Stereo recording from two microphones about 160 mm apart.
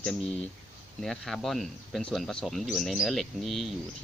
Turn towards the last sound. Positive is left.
turn(degrees=0)  # may be behind; listen again after turning